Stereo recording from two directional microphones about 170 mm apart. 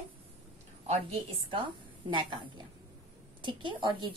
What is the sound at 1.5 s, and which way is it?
Speech, 30° right (ahead or behind).